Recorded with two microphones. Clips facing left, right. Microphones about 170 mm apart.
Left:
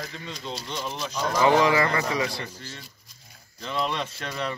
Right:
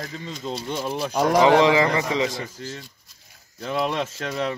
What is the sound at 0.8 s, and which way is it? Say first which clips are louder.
Speech: right 8 dB; 60° right (ahead or behind).